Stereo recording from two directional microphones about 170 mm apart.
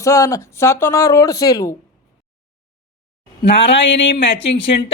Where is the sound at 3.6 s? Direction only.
90° left.